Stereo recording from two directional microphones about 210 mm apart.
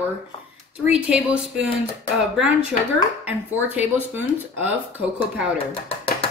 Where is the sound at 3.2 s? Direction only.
10° right (ahead or behind).